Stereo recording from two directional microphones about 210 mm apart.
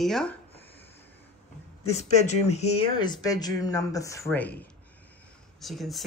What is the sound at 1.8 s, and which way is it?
Speech, 30° left (ahead or behind).